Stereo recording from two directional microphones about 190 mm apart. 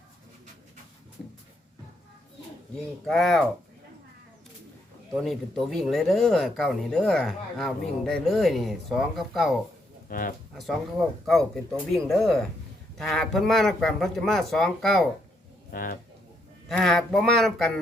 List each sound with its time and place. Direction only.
3.1 s speech: centre (ahead or behind)
5.1 s speech: centre (ahead or behind)
10.1 s speech: 45° left (ahead or behind)
10.5 s speech: centre (ahead or behind)
15.7 s speech: 50° left (ahead or behind)
16.6 s speech: centre (ahead or behind)